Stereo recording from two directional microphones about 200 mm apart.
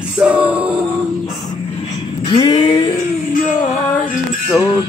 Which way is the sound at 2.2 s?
25° left (ahead or behind).